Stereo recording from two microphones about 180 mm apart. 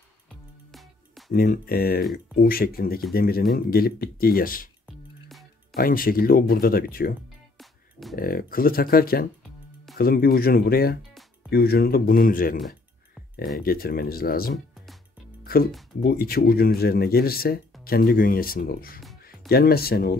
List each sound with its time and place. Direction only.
0.7 s music: centre (ahead or behind)
1.3 s speech: 55° left (ahead or behind)
4.8 s music: centre (ahead or behind)
5.8 s speech: 55° left (ahead or behind)
7.5 s music: centre (ahead or behind)
8.2 s speech: 55° left (ahead or behind)
12.5 s a sound: centre (ahead or behind)
13.6 s speech: 55° left (ahead or behind)
15.4 s music: 55° left (ahead or behind)
16.0 s speech: 60° left (ahead or behind)